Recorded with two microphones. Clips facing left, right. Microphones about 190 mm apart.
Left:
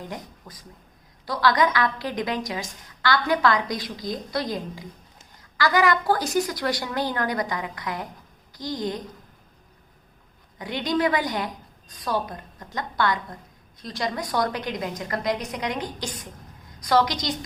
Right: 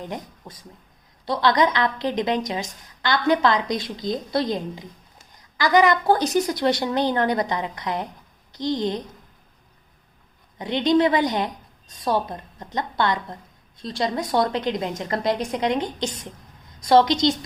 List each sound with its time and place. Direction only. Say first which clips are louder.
0.1 s a woman's voice: right 3 dB; 25° right (ahead or behind)
10.6 s a woman's voice: right 5 dB; 25° right (ahead or behind)